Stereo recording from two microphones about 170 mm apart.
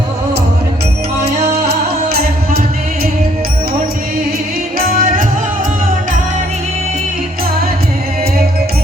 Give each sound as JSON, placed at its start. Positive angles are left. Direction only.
{"t": 1.2, "sound": "music", "side_deg": -70}
{"t": 4.8, "sound": "music", "side_deg": -55}